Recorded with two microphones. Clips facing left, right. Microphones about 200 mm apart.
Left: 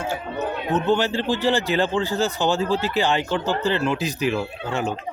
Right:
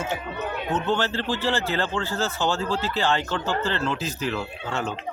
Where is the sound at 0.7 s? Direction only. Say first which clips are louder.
Left 4 dB; 15° left (ahead or behind).